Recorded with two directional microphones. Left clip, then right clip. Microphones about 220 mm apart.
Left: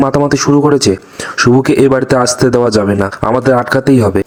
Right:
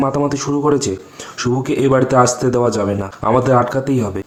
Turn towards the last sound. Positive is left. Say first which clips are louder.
# left 9 dB
turn(degrees=30)  # may be behind; listen again after turning